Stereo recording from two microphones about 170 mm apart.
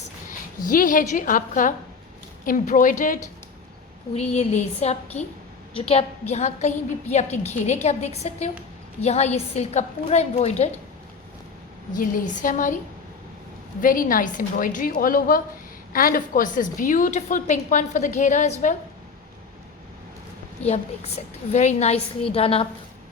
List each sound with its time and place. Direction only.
0.3 s a woman's voice: 55° left (ahead or behind)
4.4 s a woman's voice: 40° left (ahead or behind)
11.9 s a woman's voice: 50° left (ahead or behind)
13.8 s a woman's voice: 55° left (ahead or behind)
20.6 s a woman's voice: 40° left (ahead or behind)